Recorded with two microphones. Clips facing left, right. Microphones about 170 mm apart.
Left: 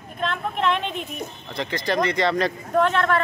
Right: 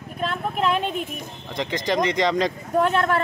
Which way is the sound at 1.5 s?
15° right (ahead or behind).